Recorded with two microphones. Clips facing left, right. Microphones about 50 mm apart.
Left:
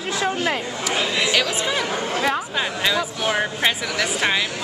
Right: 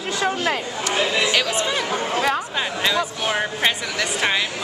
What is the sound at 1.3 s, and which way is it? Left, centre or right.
Speech, centre.